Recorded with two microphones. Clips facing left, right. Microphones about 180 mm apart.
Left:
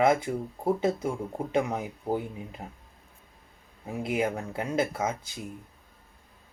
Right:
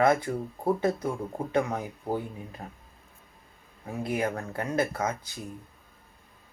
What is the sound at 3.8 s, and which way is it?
Speech, 20° left (ahead or behind).